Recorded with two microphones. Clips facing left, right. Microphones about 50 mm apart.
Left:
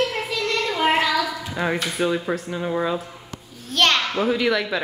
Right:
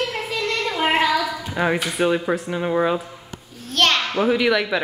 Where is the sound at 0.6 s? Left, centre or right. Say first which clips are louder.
Right 1 dB; centre.